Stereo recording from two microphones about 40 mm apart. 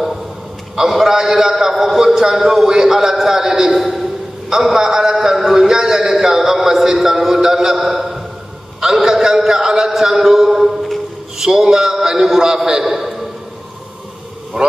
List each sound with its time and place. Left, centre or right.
0.7 s a man's voice: centre
12.9 s a sound: centre
14.5 s speech: centre